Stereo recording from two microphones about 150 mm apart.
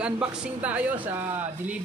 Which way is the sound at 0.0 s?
5° right (ahead or behind).